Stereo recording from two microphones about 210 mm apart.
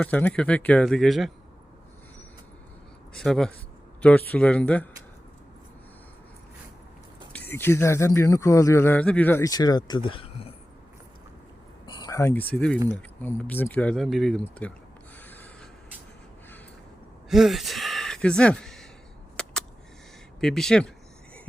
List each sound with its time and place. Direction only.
0.0 s speech: 5° left (ahead or behind)
3.2 s speech: centre (ahead or behind)
7.3 s speech: 10° left (ahead or behind); by 10.5 s 25° left (ahead or behind)
11.9 s a sound: 20° left (ahead or behind)
12.5 s speech: 5° left (ahead or behind)
15.2 s snort: 10° left (ahead or behind)
17.2 s speech: centre (ahead or behind)
19.4 s a sound: 5° left (ahead or behind)
20.4 s speech: centre (ahead or behind)